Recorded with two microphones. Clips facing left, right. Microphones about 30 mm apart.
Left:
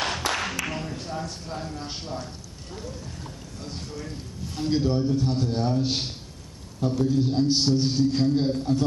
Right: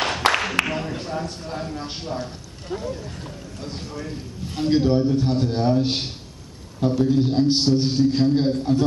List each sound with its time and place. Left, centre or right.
0.2 s a sound: right
0.7 s speech: right
2.7 s speech: right
3.6 s a man's voice: right